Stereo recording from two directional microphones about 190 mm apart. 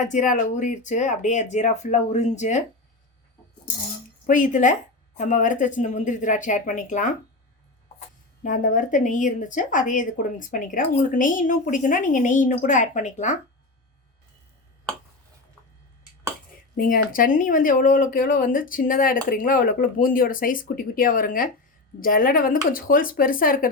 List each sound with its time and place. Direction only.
0.0 s speech: 40° left (ahead or behind)
4.3 s a woman's voice: 45° left (ahead or behind)
8.4 s a woman's voice: 40° left (ahead or behind)
16.7 s a woman's voice: 45° left (ahead or behind)